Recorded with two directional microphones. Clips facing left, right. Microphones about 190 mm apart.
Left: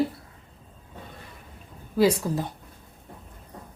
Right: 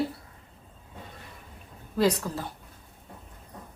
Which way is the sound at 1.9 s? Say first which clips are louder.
Left 4 dB; 10° left (ahead or behind).